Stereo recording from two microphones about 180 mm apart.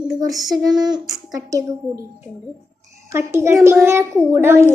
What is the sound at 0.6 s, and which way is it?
A child's voice, 25° right (ahead or behind).